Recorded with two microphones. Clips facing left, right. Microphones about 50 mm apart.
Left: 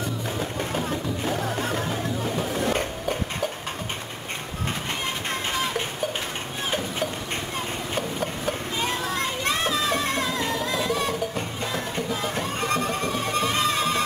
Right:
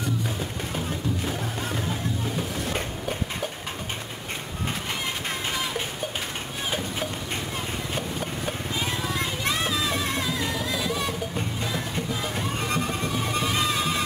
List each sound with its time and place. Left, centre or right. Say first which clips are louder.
0.4 s music: left 3 dB; centre
2.7 s a sound: left 4 dB; centre
5.5 s music: left 3 dB; centre
7.9 s children playing: left 4 dB; centre
10.9 s music: left 3 dB; centre